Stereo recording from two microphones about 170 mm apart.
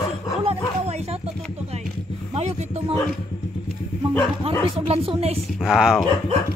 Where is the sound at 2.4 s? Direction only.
40° right (ahead or behind).